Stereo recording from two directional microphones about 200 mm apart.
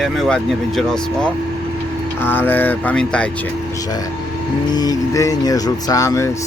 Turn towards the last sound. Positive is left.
turn(degrees=15)  # may be behind; listen again after turning